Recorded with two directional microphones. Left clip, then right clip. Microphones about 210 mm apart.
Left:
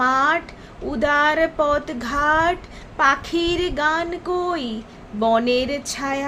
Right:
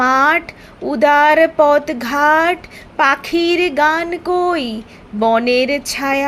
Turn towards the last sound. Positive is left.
turn(degrees=-25)  # may be behind; listen again after turning